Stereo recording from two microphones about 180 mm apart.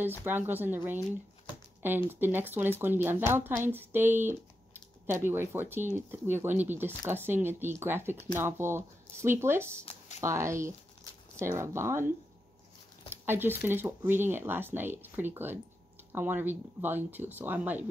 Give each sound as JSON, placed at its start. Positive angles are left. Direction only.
{"t": 0.2, "sound": "speech", "side_deg": -10}
{"t": 2.0, "sound": "speech", "side_deg": -10}
{"t": 9.8, "sound": "speech", "side_deg": 40}
{"t": 10.2, "sound": "speech", "side_deg": -15}
{"t": 13.1, "sound": "speech", "side_deg": -10}